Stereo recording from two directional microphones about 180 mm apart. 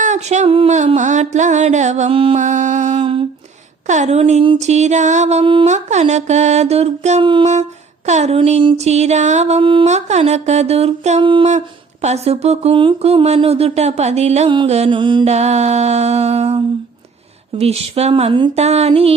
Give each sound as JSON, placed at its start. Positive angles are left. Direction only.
{"t": 0.0, "sound": "speech", "side_deg": -40}
{"t": 2.4, "sound": "music", "side_deg": -45}
{"t": 3.0, "sound": "humming", "side_deg": -30}
{"t": 3.8, "sound": "speech", "side_deg": -40}
{"t": 8.0, "sound": "speech", "side_deg": -40}